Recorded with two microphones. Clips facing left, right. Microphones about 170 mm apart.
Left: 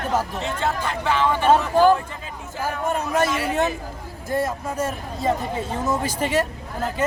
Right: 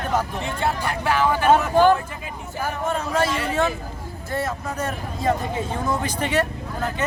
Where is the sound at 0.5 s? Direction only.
10° right (ahead or behind).